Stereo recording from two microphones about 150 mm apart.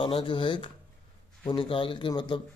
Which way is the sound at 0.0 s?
35° left (ahead or behind).